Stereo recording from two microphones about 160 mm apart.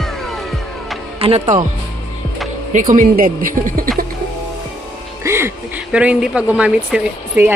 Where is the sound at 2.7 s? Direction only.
55° right (ahead or behind).